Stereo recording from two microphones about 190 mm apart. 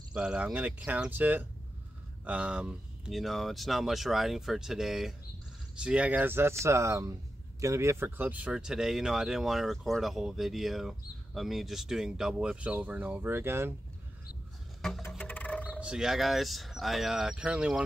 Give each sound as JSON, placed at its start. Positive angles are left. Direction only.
{"t": 0.1, "sound": "speech", "side_deg": -5}
{"t": 15.0, "sound": "music", "side_deg": 10}
{"t": 15.8, "sound": "speech", "side_deg": -5}